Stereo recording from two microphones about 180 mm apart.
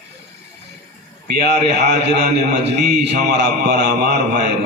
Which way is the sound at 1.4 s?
70° right (ahead or behind).